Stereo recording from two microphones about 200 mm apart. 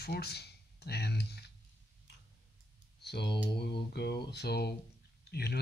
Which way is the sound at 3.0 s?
55° left (ahead or behind).